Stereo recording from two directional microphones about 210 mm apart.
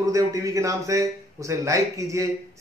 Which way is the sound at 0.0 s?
15° right (ahead or behind).